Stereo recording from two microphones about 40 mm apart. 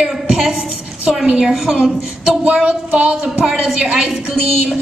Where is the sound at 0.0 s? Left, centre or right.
Centre.